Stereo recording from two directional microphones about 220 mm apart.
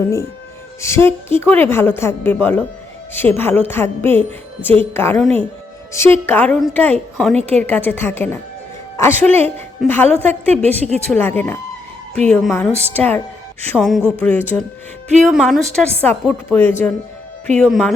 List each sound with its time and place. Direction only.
0.0 s a woman's voice: 10° left (ahead or behind)
10.5 s a woman's voice: 30° right (ahead or behind)
11.1 s a woman's voice: 10° left (ahead or behind)